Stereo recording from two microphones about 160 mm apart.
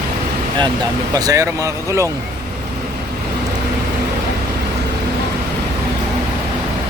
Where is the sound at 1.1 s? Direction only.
20° right (ahead or behind).